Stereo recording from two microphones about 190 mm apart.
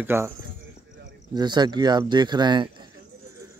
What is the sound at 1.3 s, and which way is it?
Speech, 20° right (ahead or behind).